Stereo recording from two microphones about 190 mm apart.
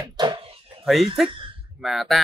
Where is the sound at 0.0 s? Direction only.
20° right (ahead or behind).